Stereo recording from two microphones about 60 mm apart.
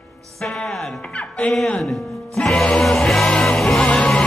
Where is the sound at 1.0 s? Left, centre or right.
Centre.